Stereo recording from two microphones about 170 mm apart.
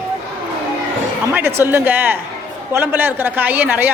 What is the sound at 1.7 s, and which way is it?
A woman's voice, 10° right (ahead or behind).